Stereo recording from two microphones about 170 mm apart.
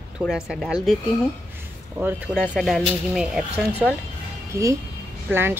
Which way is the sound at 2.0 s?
15° right (ahead or behind).